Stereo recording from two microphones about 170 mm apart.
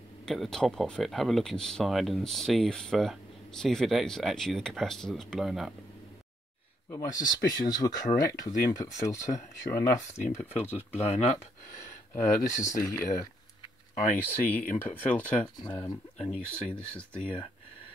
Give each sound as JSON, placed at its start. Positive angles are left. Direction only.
{"t": 0.2, "sound": "speech", "side_deg": 0}
{"t": 6.9, "sound": "speech", "side_deg": 20}
{"t": 11.0, "sound": "speech", "side_deg": 40}
{"t": 12.1, "sound": "speech", "side_deg": 15}
{"t": 13.1, "sound": "a sound", "side_deg": 20}
{"t": 14.1, "sound": "speech", "side_deg": 10}